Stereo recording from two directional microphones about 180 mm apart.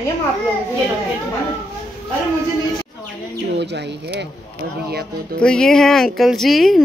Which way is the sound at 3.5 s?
70° right (ahead or behind).